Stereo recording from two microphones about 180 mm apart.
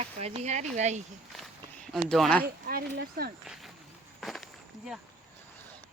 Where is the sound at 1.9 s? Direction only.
Centre (ahead or behind).